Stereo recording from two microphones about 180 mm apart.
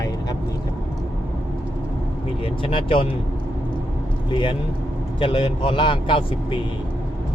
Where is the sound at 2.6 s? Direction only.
30° left (ahead or behind).